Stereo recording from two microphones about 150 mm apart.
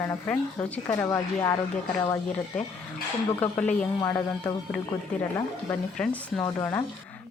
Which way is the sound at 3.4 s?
10° left (ahead or behind).